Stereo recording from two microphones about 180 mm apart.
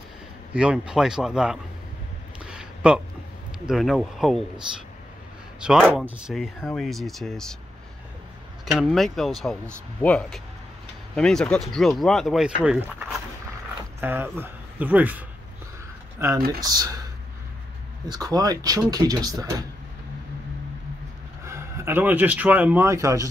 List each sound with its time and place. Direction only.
0.5 s speech: 5° right (ahead or behind)
2.4 s a sound: 5° right (ahead or behind)
3.5 s speech: centre (ahead or behind)
5.6 s speech: 5° right (ahead or behind)
8.7 s speech: centre (ahead or behind)
16.6 s speech: 20° right (ahead or behind)
18.0 s speech: 20° right (ahead or behind)
21.5 s speech: 15° right (ahead or behind)